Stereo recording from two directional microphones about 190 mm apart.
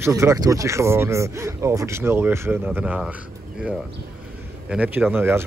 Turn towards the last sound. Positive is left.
turn(degrees=-10)  # may be behind; listen again after turning